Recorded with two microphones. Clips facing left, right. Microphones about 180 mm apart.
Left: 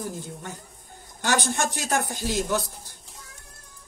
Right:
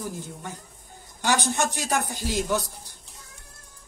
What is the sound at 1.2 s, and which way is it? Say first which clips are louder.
Speech: right 1 dB; 15° right (ahead or behind).